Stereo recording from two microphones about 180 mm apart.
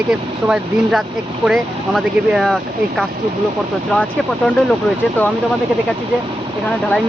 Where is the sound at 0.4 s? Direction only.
5° right (ahead or behind).